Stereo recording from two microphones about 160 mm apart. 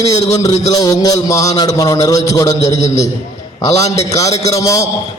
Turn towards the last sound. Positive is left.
turn(degrees=20)  # may be behind; listen again after turning